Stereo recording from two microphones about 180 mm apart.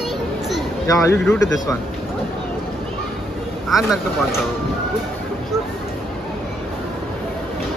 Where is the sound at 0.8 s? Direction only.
15° left (ahead or behind).